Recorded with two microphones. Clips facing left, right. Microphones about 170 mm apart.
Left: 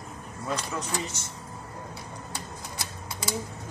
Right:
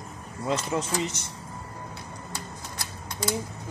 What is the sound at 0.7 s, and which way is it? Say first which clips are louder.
Speech: right 5 dB; 20° right (ahead or behind).